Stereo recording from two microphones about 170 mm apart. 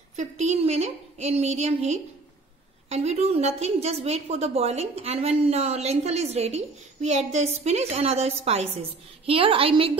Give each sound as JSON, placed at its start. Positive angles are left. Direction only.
{"t": 0.1, "sound": "a woman's voice", "side_deg": -45}